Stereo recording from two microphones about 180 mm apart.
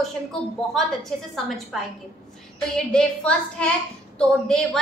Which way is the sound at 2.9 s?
5° left (ahead or behind).